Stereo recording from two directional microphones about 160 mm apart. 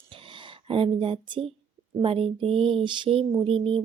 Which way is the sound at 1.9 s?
35° right (ahead or behind).